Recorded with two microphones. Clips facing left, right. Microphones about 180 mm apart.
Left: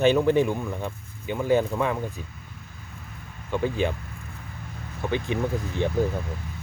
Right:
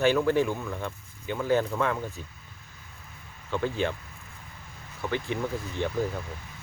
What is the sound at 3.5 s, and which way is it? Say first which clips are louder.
Speech: left 3 dB; 15° left (ahead or behind).